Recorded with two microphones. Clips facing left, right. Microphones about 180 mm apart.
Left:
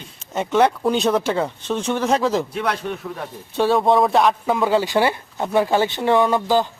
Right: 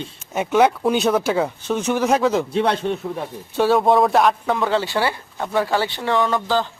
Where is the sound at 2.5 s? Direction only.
30° right (ahead or behind).